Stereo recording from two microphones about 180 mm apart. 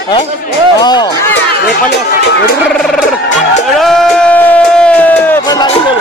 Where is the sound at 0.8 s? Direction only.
25° left (ahead or behind).